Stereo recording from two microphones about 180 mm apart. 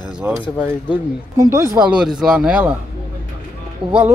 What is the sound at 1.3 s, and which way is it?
Speech, 15° right (ahead or behind).